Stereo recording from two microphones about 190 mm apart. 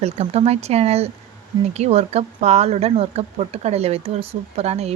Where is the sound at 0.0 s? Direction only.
35° right (ahead or behind).